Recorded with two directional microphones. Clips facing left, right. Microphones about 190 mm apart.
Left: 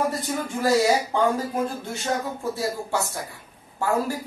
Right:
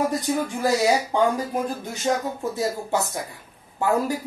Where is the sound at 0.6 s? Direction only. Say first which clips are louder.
Left 2 dB; 15° right (ahead or behind).